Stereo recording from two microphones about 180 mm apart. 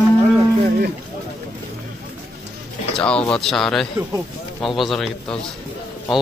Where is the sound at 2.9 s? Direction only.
5° left (ahead or behind).